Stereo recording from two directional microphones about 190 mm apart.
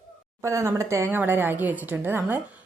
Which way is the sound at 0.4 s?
15° right (ahead or behind).